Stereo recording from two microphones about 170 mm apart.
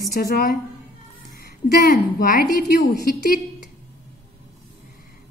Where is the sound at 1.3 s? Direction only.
60° left (ahead or behind).